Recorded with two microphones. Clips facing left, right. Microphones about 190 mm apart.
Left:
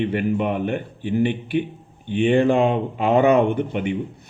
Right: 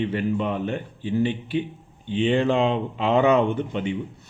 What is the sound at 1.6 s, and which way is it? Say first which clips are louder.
Speech: left 3 dB; 55° left (ahead or behind).